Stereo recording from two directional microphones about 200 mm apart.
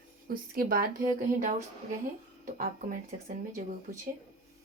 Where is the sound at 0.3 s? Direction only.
45° right (ahead or behind).